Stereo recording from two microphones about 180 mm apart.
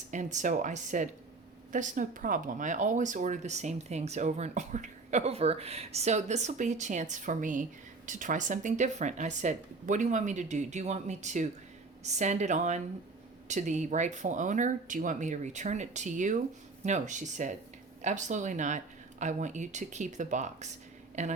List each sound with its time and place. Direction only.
0.1 s speech: 45° right (ahead or behind)